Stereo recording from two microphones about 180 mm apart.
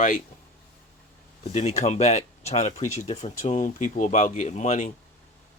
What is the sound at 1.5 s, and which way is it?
Speech, 40° left (ahead or behind).